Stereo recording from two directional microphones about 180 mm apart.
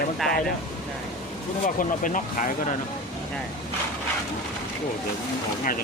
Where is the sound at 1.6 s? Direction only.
45° left (ahead or behind).